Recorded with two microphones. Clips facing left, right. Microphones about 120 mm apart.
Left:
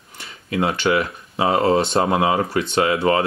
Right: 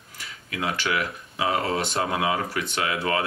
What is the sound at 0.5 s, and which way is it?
Speech, 30° left (ahead or behind).